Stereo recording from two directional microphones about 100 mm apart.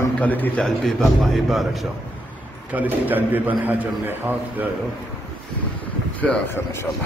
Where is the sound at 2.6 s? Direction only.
15° right (ahead or behind).